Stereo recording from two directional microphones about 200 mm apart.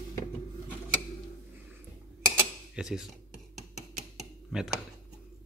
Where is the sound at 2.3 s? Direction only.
5° right (ahead or behind).